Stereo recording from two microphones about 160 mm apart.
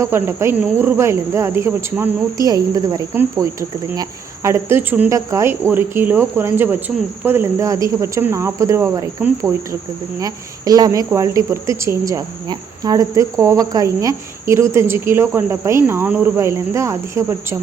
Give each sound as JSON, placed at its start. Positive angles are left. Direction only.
{"t": 0.0, "sound": "speech", "side_deg": -15}